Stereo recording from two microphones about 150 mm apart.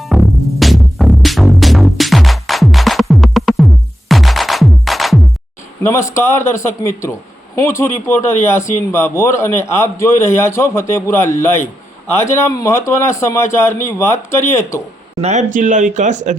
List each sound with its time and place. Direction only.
0.0 s music: centre (ahead or behind)
6.1 s a man's voice: 20° left (ahead or behind)
15.2 s speech: 50° right (ahead or behind)